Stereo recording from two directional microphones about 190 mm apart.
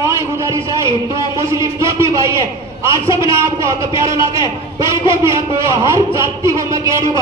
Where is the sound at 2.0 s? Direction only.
15° right (ahead or behind).